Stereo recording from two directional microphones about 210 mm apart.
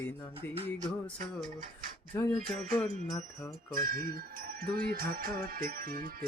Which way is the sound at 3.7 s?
40° right (ahead or behind).